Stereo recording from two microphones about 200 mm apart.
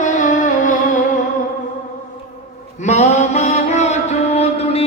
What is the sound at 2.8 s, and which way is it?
Mantra, 35° left (ahead or behind).